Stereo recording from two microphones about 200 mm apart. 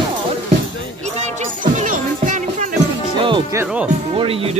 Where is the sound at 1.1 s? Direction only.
40° right (ahead or behind).